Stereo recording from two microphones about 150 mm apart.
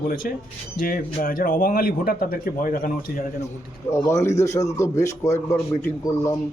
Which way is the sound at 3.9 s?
20° left (ahead or behind).